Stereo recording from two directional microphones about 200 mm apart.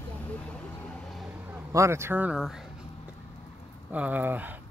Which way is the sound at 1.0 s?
Centre (ahead or behind).